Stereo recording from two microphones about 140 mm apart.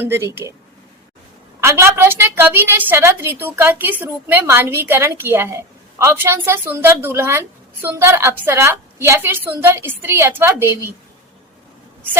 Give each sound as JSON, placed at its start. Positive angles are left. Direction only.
{"t": 0.0, "sound": "a woman's voice", "side_deg": -20}
{"t": 1.6, "sound": "a woman's voice", "side_deg": -20}